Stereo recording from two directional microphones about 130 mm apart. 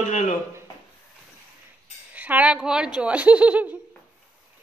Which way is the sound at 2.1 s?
10° right (ahead or behind).